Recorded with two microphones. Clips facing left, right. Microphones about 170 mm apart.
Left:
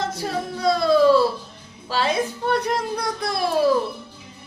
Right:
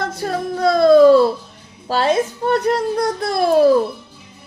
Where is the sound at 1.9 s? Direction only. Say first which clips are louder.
Right 5 dB; 45° right (ahead or behind).